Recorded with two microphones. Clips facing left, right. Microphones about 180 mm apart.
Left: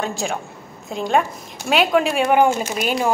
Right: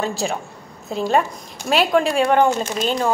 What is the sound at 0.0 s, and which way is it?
Speech, centre (ahead or behind).